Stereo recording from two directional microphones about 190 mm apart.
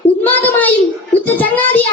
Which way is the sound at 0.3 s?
10° left (ahead or behind).